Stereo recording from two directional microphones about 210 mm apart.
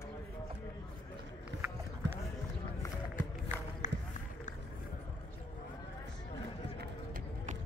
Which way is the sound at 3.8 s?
35° left (ahead or behind).